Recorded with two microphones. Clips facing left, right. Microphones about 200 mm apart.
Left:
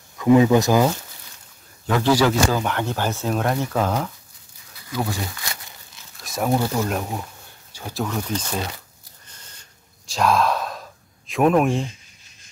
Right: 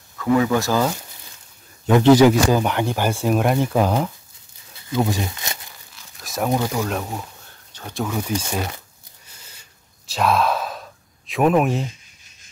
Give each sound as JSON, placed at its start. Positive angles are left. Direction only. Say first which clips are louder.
{"t": 0.2, "sound": "speech", "louder": "left 4 dB", "side_deg": 20}
{"t": 1.9, "sound": "speech", "louder": "right 6 dB", "side_deg": -20}
{"t": 4.7, "sound": "a sound", "louder": "right 5 dB", "side_deg": -25}
{"t": 6.2, "sound": "a sound", "louder": "right 1 dB", "side_deg": 0}
{"t": 6.7, "sound": "speech", "louder": "even", "side_deg": 5}
{"t": 9.4, "sound": "sigh", "louder": "even", "side_deg": -5}